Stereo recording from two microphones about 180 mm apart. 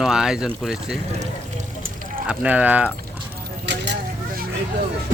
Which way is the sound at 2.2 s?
5° right (ahead or behind).